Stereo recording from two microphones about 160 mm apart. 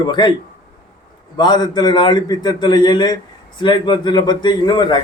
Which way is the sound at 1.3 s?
25° left (ahead or behind).